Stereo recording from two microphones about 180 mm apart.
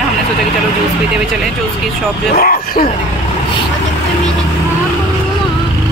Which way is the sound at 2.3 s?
55° left (ahead or behind).